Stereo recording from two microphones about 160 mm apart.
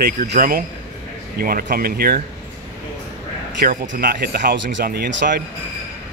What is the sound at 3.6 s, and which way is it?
Speech, 55° right (ahead or behind).